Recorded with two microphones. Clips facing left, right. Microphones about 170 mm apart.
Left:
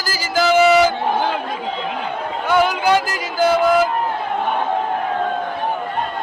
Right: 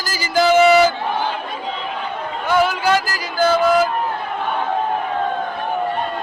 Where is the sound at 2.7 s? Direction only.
15° left (ahead or behind).